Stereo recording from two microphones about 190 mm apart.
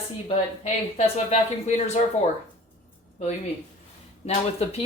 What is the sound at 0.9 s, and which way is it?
Speech, 35° left (ahead or behind).